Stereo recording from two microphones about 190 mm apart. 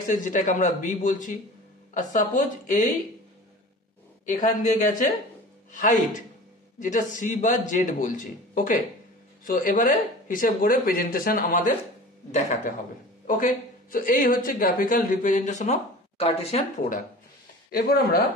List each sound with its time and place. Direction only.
0.1 s a man's voice: 40° left (ahead or behind)
4.8 s a woman's voice: 45° left (ahead or behind)
17.6 s a woman's voice: 50° left (ahead or behind)